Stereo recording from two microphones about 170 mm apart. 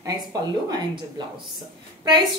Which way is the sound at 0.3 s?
25° right (ahead or behind).